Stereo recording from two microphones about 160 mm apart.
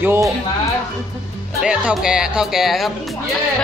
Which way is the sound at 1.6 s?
5° right (ahead or behind).